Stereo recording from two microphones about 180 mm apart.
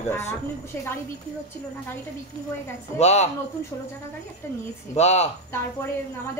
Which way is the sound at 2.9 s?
40° left (ahead or behind).